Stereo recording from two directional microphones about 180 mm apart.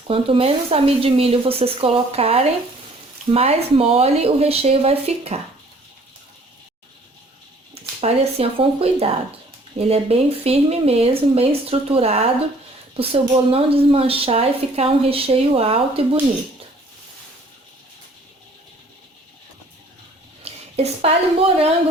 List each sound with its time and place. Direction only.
0.1 s a woman's voice: 30° right (ahead or behind)
7.7 s a woman's voice: 35° right (ahead or behind)
13.5 s a woman's voice: 30° right (ahead or behind)
20.4 s a woman's voice: 35° right (ahead or behind)